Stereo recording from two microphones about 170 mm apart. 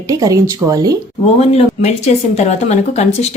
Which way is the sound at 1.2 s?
40° left (ahead or behind).